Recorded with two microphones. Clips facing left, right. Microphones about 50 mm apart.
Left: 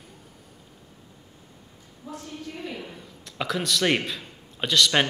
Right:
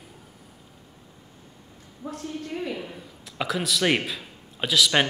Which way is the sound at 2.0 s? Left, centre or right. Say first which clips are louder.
Right 3 dB; right.